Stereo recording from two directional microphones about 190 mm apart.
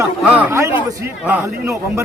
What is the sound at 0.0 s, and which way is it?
A man's voice, 10° right (ahead or behind).